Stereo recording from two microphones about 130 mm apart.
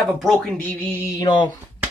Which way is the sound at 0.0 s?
Centre (ahead or behind).